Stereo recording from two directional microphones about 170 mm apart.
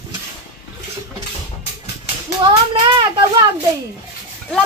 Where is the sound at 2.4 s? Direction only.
30° right (ahead or behind).